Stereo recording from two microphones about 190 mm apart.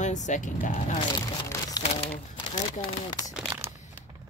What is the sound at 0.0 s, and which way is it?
Speech, 40° left (ahead or behind).